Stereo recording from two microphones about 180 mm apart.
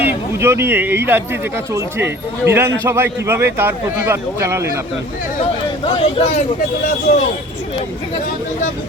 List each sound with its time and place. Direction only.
0.0 s speech: 10° right (ahead or behind)
5.8 s speech: 30° left (ahead or behind)
7.1 s speech: 45° left (ahead or behind)